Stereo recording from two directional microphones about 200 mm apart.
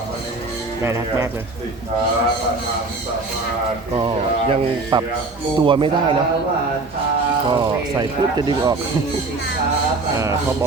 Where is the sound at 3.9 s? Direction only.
25° right (ahead or behind).